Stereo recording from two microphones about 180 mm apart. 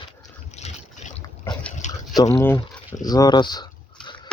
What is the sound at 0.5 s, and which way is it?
Boat, 40° left (ahead or behind).